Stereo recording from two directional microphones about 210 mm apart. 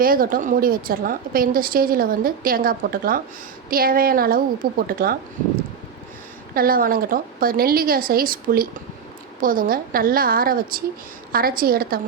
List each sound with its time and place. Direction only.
0.0 s a woman's voice: 40° right (ahead or behind)
6.5 s a woman's voice: 45° right (ahead or behind)